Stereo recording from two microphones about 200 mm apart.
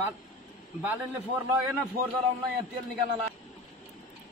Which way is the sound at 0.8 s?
5° right (ahead or behind).